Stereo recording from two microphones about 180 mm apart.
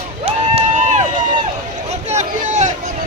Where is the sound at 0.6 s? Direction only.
40° right (ahead or behind).